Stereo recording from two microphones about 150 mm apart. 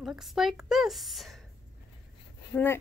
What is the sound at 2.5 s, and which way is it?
Speech, 15° left (ahead or behind).